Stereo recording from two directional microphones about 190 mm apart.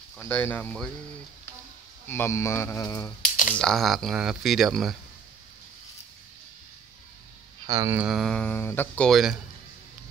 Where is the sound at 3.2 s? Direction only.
45° left (ahead or behind).